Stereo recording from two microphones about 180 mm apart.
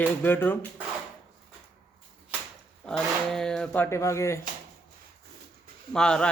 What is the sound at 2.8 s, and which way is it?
Speech, 5° left (ahead or behind).